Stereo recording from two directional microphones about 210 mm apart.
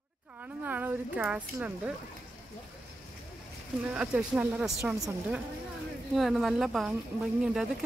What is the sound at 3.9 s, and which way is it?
Speech, 5° right (ahead or behind).